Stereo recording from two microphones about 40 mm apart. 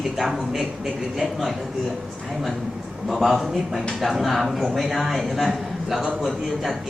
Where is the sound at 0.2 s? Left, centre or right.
Centre.